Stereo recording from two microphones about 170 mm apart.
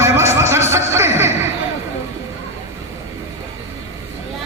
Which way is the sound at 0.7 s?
15° right (ahead or behind).